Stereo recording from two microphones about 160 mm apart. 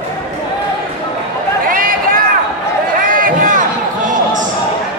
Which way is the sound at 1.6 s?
60° right (ahead or behind).